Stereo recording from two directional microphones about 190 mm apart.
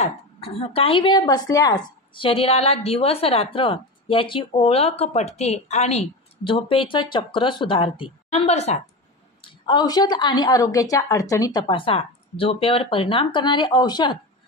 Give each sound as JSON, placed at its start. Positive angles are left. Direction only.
{"t": 0.0, "sound": "a woman's voice", "side_deg": 30}
{"t": 9.4, "sound": "a woman's voice", "side_deg": 25}